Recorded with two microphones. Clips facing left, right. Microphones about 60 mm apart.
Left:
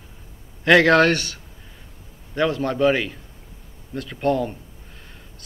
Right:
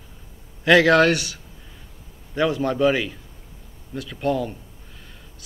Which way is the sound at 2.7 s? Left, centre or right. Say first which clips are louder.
Left 1 dB; centre.